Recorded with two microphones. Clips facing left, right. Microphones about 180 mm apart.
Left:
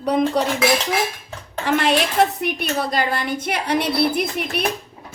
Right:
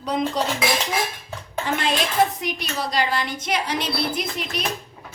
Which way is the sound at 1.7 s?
65° left (ahead or behind).